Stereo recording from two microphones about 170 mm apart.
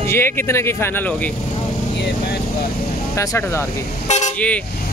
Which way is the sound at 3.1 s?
15° left (ahead or behind).